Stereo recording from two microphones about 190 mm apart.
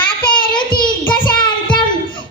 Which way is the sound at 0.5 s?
25° left (ahead or behind).